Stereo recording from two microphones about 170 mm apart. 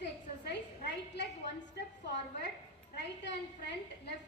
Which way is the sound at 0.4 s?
85° left.